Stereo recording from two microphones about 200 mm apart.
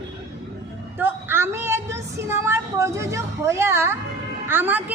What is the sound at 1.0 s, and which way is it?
A woman's voice, 10° right (ahead or behind).